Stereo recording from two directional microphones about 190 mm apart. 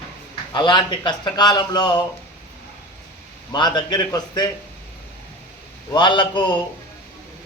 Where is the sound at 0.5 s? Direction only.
25° left (ahead or behind).